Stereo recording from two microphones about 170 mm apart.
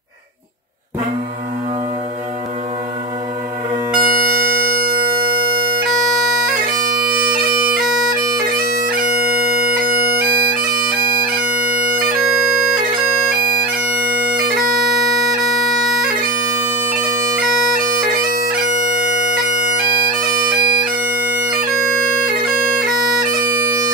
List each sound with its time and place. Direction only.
4.0 s bagpipes: 55° right (ahead or behind)
9.8 s bagpipes: 60° right (ahead or behind)
14.2 s bagpipes: 55° right (ahead or behind)
17.8 s bagpipes: 60° right (ahead or behind)
20.2 s bagpipes: 60° right (ahead or behind)
20.5 s bagpipes: 30° right (ahead or behind)